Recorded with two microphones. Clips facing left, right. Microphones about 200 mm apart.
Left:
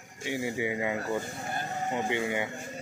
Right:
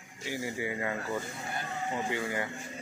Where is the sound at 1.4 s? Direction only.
45° left (ahead or behind).